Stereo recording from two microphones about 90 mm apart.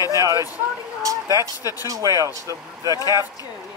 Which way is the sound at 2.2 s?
35° right (ahead or behind).